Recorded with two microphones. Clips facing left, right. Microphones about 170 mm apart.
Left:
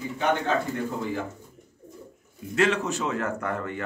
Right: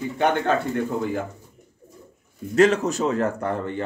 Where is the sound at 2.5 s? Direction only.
40° right (ahead or behind).